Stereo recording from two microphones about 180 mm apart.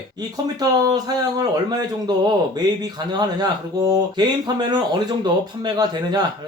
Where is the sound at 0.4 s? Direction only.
20° right (ahead or behind).